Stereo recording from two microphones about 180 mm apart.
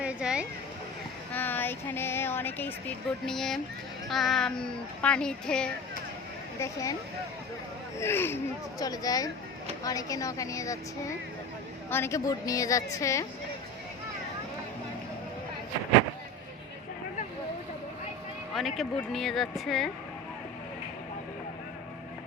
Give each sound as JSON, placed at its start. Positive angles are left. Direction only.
{"t": 0.0, "sound": "a sound", "side_deg": -5}
{"t": 1.3, "sound": "speech", "side_deg": 10}
{"t": 6.6, "sound": "a woman's voice", "side_deg": 20}
{"t": 7.9, "sound": "a woman's voice", "side_deg": 15}
{"t": 11.9, "sound": "a woman's voice", "side_deg": 15}
{"t": 18.8, "sound": "speech", "side_deg": 0}